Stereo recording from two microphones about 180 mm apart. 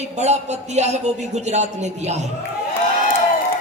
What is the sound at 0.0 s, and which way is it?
Speech, 40° right (ahead or behind).